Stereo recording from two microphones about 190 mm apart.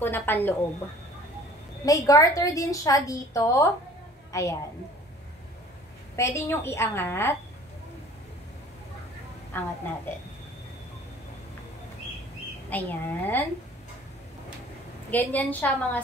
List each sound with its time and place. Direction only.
0.0 s a woman's voice: 10° left (ahead or behind)
1.9 s a woman's voice: 15° left (ahead or behind)
6.1 s a woman's voice: 15° left (ahead or behind)
9.5 s a woman's voice: 10° left (ahead or behind)
12.6 s a woman's voice: 10° left (ahead or behind)
15.0 s a woman's voice: 10° left (ahead or behind)